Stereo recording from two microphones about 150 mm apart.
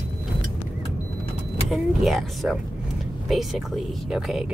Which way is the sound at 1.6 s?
Centre (ahead or behind).